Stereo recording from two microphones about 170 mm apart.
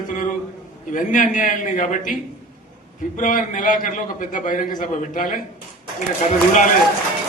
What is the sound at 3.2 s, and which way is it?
A man's voice, 50° left (ahead or behind).